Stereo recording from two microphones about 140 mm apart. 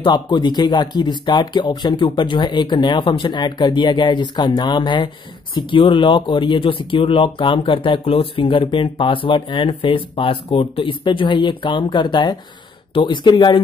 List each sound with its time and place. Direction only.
0.0 s speech: 35° left (ahead or behind)